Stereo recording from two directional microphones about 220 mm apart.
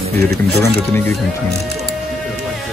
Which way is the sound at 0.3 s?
10° left (ahead or behind).